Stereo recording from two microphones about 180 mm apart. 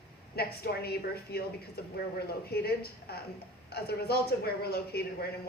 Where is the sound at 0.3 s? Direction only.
60° left (ahead or behind).